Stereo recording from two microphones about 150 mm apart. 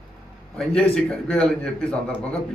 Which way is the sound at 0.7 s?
5° left (ahead or behind).